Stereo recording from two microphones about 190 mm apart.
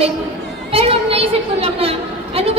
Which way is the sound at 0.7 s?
30° right (ahead or behind).